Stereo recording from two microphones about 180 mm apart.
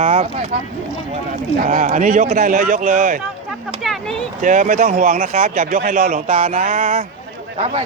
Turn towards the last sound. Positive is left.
turn(degrees=-35)  # may be behind; listen again after turning